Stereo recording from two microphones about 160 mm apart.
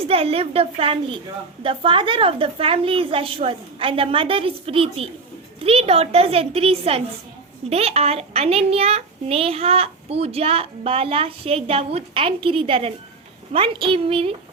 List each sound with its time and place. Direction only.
0.1 s a child's voice: 40° right (ahead or behind)